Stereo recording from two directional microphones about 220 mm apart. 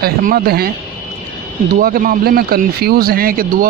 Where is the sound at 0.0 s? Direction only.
40° right (ahead or behind).